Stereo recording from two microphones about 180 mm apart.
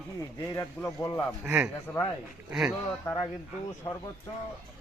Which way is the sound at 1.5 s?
5° right (ahead or behind).